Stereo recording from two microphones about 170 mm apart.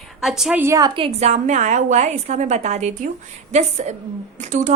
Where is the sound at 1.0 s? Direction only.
40° right (ahead or behind).